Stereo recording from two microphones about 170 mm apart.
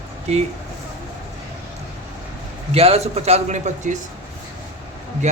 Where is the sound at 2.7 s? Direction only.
35° right (ahead or behind).